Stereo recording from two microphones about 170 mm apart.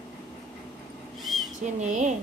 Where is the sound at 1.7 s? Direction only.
45° right (ahead or behind).